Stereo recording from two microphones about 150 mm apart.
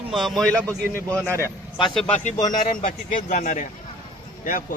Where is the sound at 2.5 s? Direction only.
60° left (ahead or behind).